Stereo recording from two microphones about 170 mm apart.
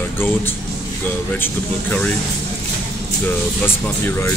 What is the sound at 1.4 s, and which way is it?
Speech, 10° left (ahead or behind).